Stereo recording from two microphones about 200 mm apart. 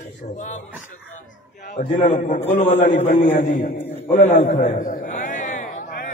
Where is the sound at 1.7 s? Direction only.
40° left (ahead or behind).